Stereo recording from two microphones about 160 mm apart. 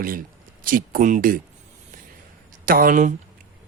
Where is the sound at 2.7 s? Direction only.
60° right (ahead or behind).